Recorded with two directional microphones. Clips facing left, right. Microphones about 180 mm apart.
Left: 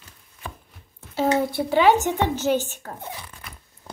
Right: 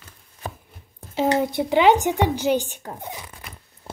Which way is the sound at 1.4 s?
20° right (ahead or behind).